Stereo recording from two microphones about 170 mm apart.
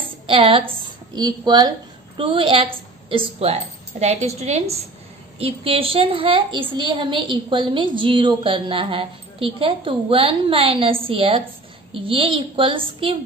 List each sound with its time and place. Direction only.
0.3 s a woman's voice: 30° right (ahead or behind)